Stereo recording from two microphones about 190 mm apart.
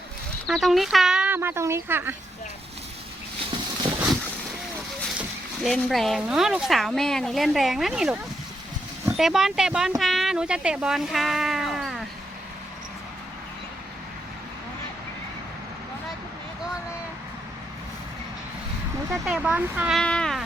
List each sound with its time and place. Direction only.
0.4 s speech: centre (ahead or behind)
5.6 s a woman's voice: centre (ahead or behind)
19.1 s a sound: 5° right (ahead or behind)